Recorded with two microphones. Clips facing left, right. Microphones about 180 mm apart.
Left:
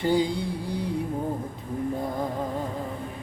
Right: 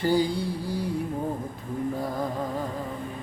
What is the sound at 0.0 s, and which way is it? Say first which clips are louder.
Music: even; 20° left (ahead or behind).